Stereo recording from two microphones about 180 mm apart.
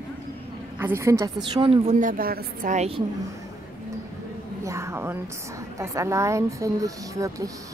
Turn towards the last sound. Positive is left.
turn(degrees=-20)  # may be behind; listen again after turning